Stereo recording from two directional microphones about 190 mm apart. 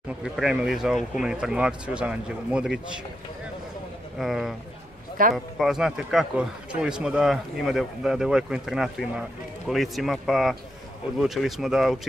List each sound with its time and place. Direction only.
0.2 s speech: 5° right (ahead or behind)
4.2 s speech: centre (ahead or behind)